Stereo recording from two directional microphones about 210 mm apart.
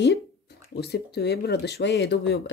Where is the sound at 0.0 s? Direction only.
55° left (ahead or behind).